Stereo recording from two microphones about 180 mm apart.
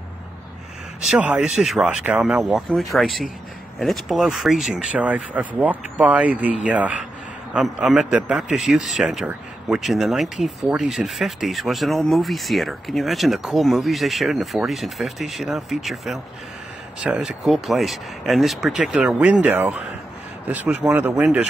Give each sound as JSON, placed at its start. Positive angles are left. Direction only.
{"t": 1.0, "sound": "speech", "side_deg": -5}